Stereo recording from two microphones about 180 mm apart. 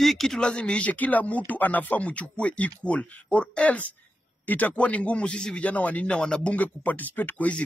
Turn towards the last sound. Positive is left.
turn(degrees=10)  # may be behind; listen again after turning